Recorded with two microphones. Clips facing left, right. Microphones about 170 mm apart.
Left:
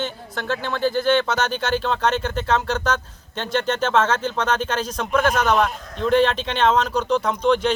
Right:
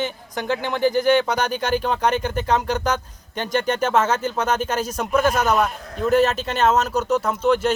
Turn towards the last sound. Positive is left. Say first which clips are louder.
# even
turn(degrees=-5)  # may be behind; listen again after turning